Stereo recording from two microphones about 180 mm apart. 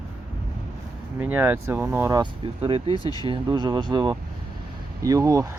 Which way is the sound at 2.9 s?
25° left (ahead or behind).